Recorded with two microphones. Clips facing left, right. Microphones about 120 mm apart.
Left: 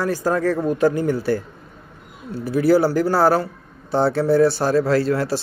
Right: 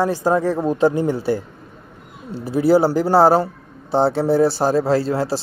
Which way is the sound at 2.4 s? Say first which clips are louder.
Right 1 dB; 25° right (ahead or behind).